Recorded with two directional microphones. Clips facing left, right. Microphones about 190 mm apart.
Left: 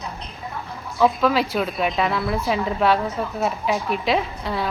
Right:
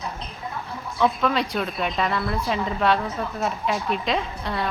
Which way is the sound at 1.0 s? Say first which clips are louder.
Left 3 dB; 5° left (ahead or behind).